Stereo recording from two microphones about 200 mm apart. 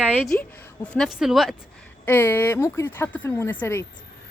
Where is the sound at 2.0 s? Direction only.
10° left (ahead or behind).